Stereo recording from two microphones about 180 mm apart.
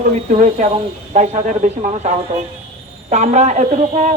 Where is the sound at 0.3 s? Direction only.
45° right (ahead or behind).